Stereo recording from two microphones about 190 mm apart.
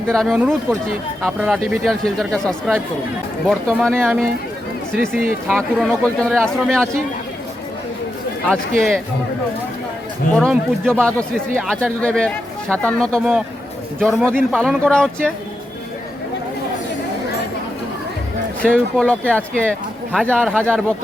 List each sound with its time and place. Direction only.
0.1 s speech: centre (ahead or behind)
5.5 s speech: centre (ahead or behind)
8.4 s speech: centre (ahead or behind)
10.3 s speech: 5° left (ahead or behind)
18.6 s speech: 5° left (ahead or behind)